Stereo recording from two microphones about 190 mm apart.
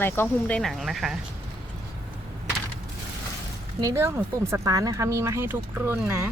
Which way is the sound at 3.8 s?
15° right (ahead or behind).